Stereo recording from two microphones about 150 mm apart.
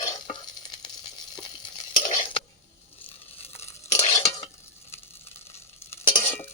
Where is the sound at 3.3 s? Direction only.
40° left (ahead or behind).